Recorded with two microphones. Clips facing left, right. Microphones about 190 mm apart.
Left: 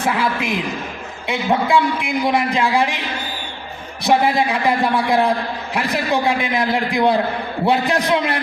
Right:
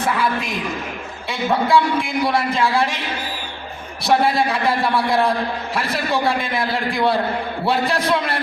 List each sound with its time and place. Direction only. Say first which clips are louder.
1.3 s a man's voice: even; 15° left (ahead or behind)
4.0 s a man's voice: left 1 dB; 15° left (ahead or behind)